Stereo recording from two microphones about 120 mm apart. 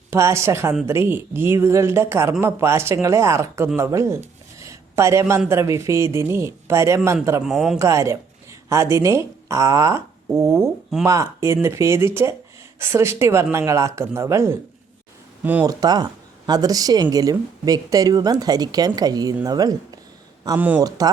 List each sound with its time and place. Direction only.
0.1 s speech: 25° right (ahead or behind)
4.6 s a sound: 25° right (ahead or behind)
5.5 s speech: 25° right (ahead or behind)
7.4 s a man's voice: 5° right (ahead or behind)
7.8 s speech: 25° right (ahead or behind)
15.6 s a woman's voice: 35° right (ahead or behind)
20.6 s speech: 15° right (ahead or behind)